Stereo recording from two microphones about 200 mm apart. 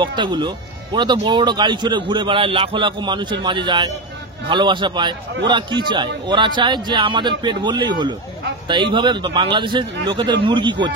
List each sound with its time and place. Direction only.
0.0 s a man's voice: 25° right (ahead or behind)